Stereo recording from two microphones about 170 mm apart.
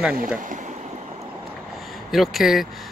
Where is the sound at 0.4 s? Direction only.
50° right (ahead or behind).